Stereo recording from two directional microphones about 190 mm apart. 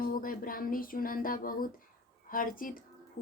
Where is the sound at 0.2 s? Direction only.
45° left (ahead or behind).